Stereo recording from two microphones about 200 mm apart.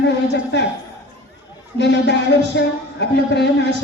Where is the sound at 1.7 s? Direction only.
60° left (ahead or behind).